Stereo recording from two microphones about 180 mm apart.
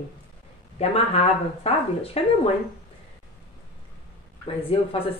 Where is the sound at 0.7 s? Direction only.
35° left (ahead or behind).